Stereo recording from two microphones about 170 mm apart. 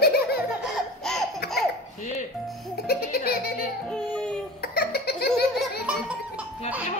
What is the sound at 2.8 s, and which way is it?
Music, 65° left (ahead or behind).